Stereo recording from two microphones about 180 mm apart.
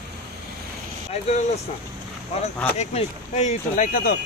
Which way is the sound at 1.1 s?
40° left (ahead or behind).